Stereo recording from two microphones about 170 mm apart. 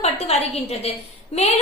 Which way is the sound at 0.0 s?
35° left (ahead or behind).